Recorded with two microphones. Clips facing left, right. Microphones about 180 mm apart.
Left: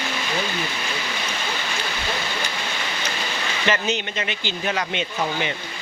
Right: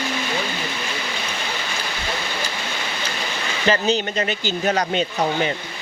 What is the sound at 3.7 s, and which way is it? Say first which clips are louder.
Speech: right 5 dB; 35° right (ahead or behind).